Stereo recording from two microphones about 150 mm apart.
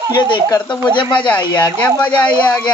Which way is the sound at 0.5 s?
30° left (ahead or behind).